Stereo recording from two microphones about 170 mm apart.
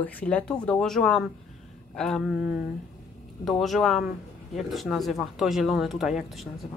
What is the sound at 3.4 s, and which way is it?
Speech, centre (ahead or behind).